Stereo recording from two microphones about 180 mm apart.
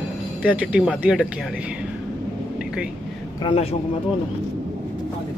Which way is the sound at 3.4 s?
30° left (ahead or behind).